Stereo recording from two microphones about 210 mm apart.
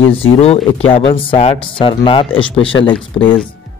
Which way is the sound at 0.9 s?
25° left (ahead or behind).